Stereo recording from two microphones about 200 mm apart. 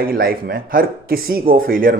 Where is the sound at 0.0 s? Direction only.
45° right (ahead or behind).